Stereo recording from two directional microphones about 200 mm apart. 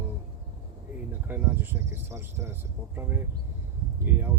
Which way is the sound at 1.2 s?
10° right (ahead or behind).